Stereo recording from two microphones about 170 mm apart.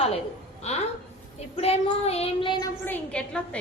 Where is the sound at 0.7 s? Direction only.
40° left (ahead or behind).